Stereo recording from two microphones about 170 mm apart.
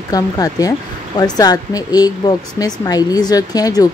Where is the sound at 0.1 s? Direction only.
20° left (ahead or behind).